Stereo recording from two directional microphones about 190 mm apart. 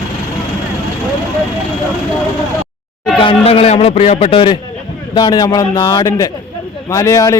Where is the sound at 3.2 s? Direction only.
30° left (ahead or behind).